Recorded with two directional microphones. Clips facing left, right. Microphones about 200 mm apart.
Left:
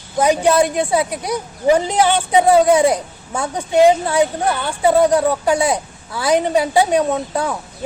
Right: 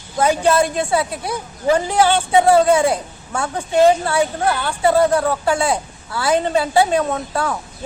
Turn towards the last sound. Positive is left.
turn(degrees=15)  # may be behind; listen again after turning